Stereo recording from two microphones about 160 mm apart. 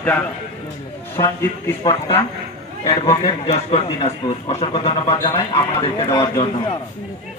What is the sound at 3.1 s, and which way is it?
Speech, 35° left (ahead or behind).